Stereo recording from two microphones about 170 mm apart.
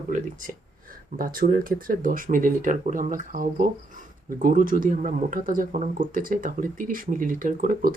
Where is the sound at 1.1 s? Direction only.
55° right (ahead or behind).